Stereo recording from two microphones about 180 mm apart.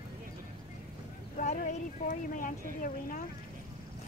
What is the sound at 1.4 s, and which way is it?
Speech, 45° left (ahead or behind).